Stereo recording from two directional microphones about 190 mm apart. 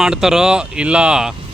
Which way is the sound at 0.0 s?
5° right (ahead or behind).